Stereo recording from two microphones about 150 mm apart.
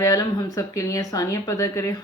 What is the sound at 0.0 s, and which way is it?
Speech, 25° left (ahead or behind).